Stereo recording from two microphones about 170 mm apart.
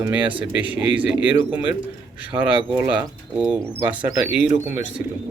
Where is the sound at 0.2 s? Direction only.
30° right (ahead or behind).